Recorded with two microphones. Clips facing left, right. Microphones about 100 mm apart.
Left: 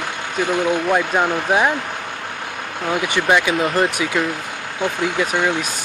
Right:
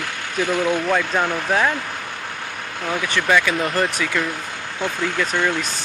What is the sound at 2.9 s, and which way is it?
Speech, 20° left (ahead or behind).